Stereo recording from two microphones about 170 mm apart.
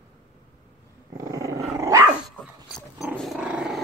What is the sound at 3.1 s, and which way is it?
Dog, 5° right (ahead or behind).